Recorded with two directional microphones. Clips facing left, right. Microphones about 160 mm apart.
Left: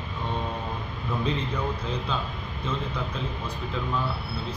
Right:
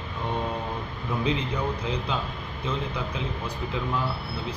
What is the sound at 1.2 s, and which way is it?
A man's voice, 15° right (ahead or behind).